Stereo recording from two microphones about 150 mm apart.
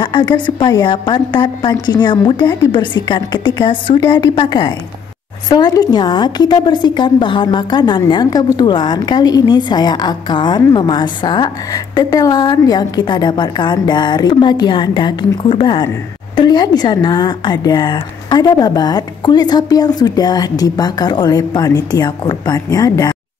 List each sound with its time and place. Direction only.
0.0 s a woman's voice: 30° left (ahead or behind)